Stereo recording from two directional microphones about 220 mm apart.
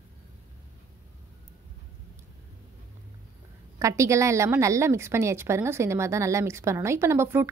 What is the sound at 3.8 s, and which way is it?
A woman's voice, 15° right (ahead or behind).